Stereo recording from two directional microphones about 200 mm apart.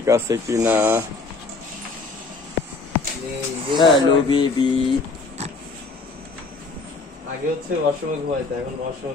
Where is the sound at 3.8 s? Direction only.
25° left (ahead or behind).